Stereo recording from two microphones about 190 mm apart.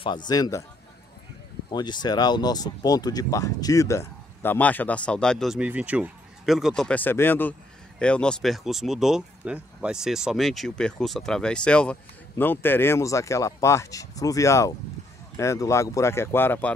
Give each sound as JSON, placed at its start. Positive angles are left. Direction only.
{"t": 0.3, "sound": "speech", "side_deg": 20}
{"t": 1.7, "sound": "speech", "side_deg": 20}